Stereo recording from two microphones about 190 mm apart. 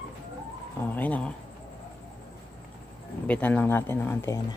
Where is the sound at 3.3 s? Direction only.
10° left (ahead or behind).